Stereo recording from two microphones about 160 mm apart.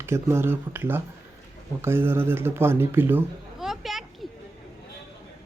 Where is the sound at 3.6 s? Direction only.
Centre (ahead or behind).